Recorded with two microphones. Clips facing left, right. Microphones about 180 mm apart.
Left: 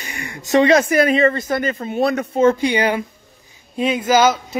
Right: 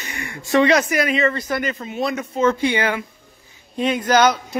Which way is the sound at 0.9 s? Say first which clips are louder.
Left 5 dB; 30° left (ahead or behind).